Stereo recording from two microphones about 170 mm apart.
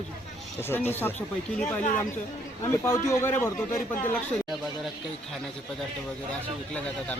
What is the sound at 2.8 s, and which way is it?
Speech, 15° left (ahead or behind).